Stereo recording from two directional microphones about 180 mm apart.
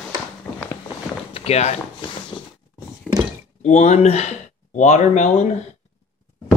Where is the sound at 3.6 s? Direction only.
40° left (ahead or behind).